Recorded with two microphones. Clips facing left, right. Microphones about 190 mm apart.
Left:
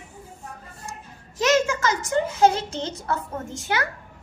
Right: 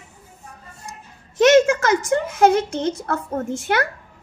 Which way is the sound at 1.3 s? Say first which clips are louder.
Right 8 dB; 60° right (ahead or behind).